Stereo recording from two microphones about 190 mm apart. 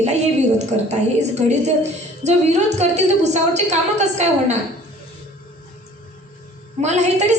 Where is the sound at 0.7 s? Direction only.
35° right (ahead or behind).